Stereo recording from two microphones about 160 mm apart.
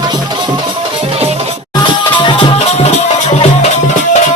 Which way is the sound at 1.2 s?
40° right (ahead or behind).